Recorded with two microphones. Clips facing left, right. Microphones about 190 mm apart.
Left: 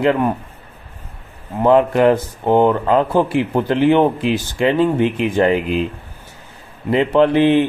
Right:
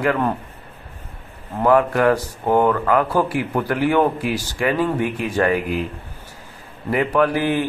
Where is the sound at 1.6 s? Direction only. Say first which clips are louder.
Left 3 dB; 20° left (ahead or behind).